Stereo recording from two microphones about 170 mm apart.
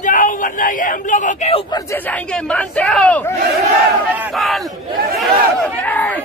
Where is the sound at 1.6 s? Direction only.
20° left (ahead or behind).